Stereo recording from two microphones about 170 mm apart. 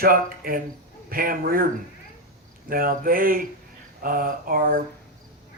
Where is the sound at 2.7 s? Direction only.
55° right (ahead or behind).